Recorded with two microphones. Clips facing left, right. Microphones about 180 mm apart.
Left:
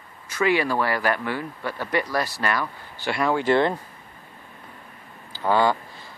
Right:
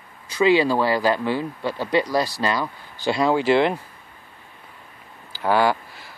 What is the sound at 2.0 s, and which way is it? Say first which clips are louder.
Speech: right 4 dB; 15° right (ahead or behind).